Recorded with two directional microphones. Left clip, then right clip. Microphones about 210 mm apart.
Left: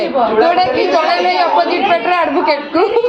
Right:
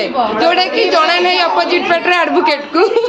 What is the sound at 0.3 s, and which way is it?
A woman's voice, 25° right (ahead or behind).